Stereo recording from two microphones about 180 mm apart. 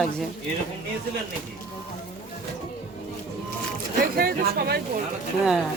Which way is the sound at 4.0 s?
55° right (ahead or behind).